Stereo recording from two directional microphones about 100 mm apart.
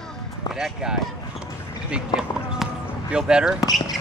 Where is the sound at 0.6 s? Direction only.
5° right (ahead or behind).